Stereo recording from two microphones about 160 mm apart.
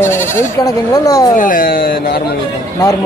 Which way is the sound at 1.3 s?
60° left (ahead or behind).